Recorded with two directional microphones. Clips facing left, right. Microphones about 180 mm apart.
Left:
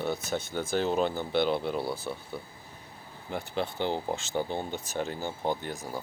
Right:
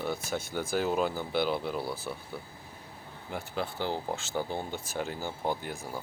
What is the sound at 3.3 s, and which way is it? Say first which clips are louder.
Speech: left 3 dB; 5° right (ahead or behind).